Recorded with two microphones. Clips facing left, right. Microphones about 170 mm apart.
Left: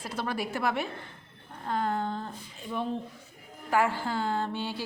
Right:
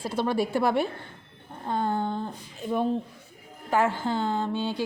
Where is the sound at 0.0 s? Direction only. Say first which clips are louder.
Right 7 dB; 30° right (ahead or behind).